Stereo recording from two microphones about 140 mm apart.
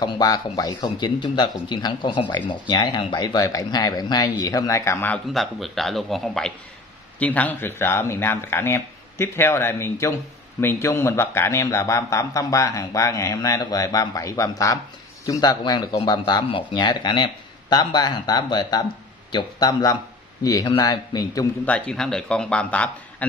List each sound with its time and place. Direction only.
0.0 s speech: 25° left (ahead or behind)
5.3 s a man's voice: centre (ahead or behind); by 21.5 s 25° left (ahead or behind)
21.6 s speech: 10° left (ahead or behind)